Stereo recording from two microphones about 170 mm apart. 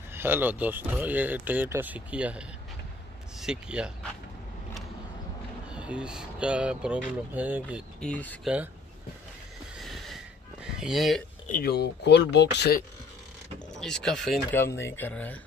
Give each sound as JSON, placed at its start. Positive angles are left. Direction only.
{"t": 0.1, "sound": "speech", "side_deg": -10}
{"t": 5.7, "sound": "speech", "side_deg": -5}
{"t": 8.0, "sound": "speech", "side_deg": 10}
{"t": 9.8, "sound": "a sound", "side_deg": 0}
{"t": 11.4, "sound": "speech", "side_deg": 65}
{"t": 13.7, "sound": "speech", "side_deg": 5}
{"t": 14.5, "sound": "speech", "side_deg": 15}